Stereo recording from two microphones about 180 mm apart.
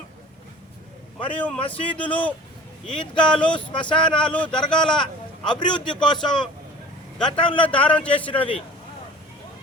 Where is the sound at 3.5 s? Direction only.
25° left (ahead or behind).